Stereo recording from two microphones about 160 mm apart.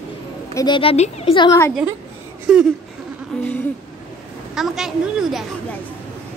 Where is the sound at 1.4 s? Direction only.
15° left (ahead or behind).